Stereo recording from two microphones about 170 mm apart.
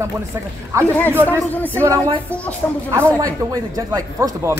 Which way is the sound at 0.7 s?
20° right (ahead or behind).